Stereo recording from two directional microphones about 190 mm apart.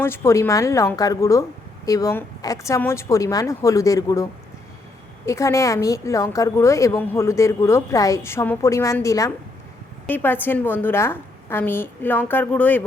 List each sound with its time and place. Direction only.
0.0 s a woman's voice: 15° left (ahead or behind)